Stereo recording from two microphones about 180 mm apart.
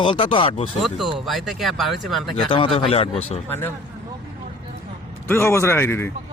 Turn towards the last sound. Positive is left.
turn(degrees=15)  # may be behind; listen again after turning